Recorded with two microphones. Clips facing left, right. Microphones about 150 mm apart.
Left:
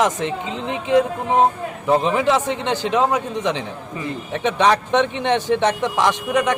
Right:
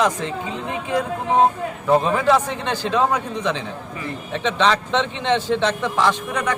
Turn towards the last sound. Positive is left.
turn(degrees=20)  # may be behind; listen again after turning